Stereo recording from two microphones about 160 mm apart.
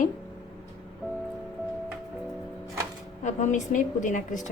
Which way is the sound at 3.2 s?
50° left (ahead or behind).